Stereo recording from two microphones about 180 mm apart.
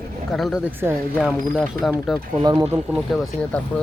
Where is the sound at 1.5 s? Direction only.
Centre (ahead or behind).